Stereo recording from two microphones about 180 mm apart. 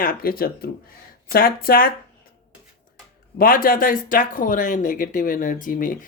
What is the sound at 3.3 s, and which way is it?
Speech, 55° left (ahead or behind).